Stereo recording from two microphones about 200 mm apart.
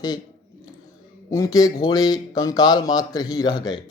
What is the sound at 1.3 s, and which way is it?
Speech, 15° left (ahead or behind).